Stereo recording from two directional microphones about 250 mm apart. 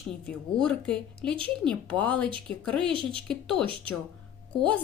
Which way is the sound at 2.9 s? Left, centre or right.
Right.